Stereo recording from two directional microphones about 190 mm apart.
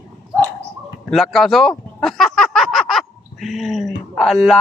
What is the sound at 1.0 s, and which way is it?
Speech, centre (ahead or behind).